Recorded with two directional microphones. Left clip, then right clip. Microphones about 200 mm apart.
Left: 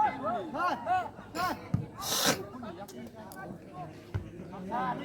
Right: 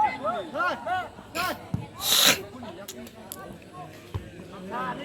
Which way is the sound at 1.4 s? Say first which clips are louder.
Right 3 dB; 25° left (ahead or behind).